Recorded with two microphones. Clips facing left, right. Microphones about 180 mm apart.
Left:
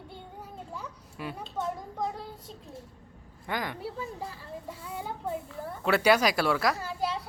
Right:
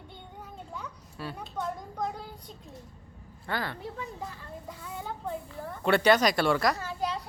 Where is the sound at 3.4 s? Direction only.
15° left (ahead or behind).